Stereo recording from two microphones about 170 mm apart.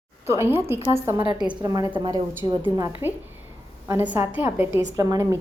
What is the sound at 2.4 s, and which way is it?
A woman's voice, 15° right (ahead or behind).